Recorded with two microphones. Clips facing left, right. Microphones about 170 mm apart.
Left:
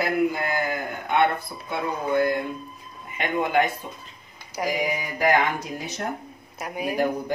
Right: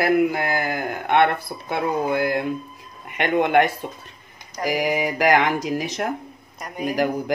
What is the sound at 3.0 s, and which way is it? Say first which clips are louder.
Speech: right 5 dB; 70° right (ahead or behind).